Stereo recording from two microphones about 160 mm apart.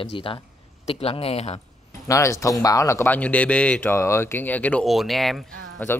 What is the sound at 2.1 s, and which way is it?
Speech, 20° left (ahead or behind).